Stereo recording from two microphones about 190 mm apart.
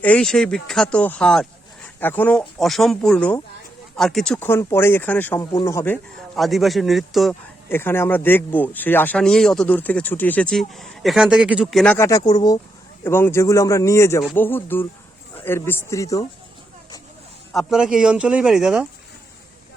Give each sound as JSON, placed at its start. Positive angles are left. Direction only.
{"t": 0.0, "sound": "a man's voice", "side_deg": 5}
{"t": 7.7, "sound": "speech", "side_deg": 10}
{"t": 11.9, "sound": "speech", "side_deg": 15}
{"t": 17.5, "sound": "a man's voice", "side_deg": 0}